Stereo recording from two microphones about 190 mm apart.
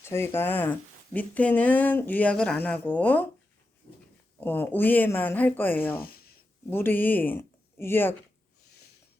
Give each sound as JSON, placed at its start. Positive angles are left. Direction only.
{"t": 0.0, "sound": "speech", "side_deg": 15}
{"t": 4.4, "sound": "speech", "side_deg": 10}
{"t": 6.0, "sound": "speech", "side_deg": 50}
{"t": 6.7, "sound": "speech", "side_deg": 10}